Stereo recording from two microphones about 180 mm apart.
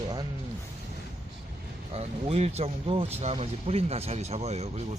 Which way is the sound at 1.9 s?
35° right (ahead or behind).